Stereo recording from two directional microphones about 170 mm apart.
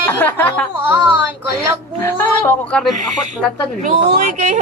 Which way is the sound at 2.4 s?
5° left (ahead or behind).